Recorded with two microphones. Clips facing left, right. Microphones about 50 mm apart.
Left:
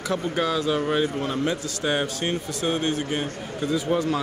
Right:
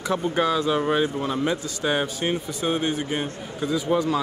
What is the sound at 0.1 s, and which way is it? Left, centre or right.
Speech, centre.